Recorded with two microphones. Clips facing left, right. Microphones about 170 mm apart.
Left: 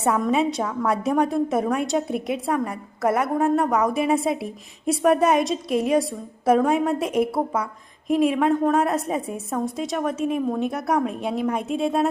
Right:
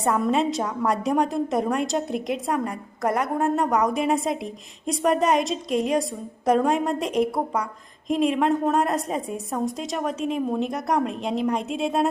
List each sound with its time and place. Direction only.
0.0 s a woman's voice: 5° left (ahead or behind)